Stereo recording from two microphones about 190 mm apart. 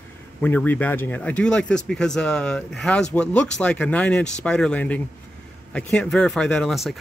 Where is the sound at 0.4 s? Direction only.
10° left (ahead or behind).